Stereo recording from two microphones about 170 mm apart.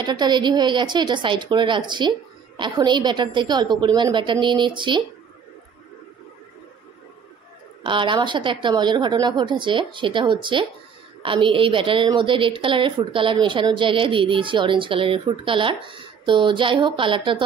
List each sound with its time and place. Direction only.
0.0 s a woman's voice: 25° right (ahead or behind)
7.8 s a woman's voice: 30° right (ahead or behind)